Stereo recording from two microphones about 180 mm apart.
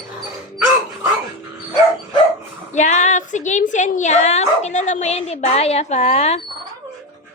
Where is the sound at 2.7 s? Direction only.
40° left (ahead or behind).